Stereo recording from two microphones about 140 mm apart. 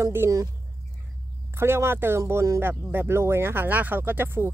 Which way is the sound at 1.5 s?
20° right (ahead or behind).